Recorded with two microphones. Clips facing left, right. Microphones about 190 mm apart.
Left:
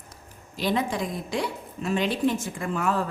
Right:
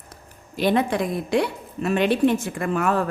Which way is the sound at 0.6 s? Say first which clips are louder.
Right 5 dB; 60° right (ahead or behind).